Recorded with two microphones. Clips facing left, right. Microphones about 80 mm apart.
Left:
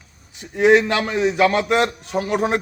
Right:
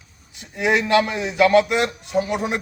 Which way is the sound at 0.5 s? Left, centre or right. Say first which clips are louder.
Left 6 dB; left.